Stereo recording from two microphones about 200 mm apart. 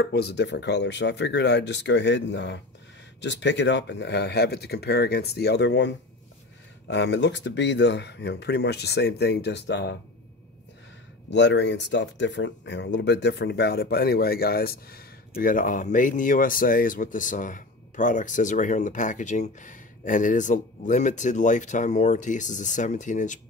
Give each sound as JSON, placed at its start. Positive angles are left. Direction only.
{"t": 0.0, "sound": "speech", "side_deg": 55}
{"t": 11.2, "sound": "speech", "side_deg": 60}